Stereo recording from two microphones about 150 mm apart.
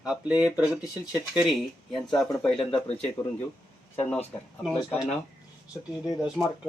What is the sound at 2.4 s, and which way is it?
Speech, 40° left (ahead or behind).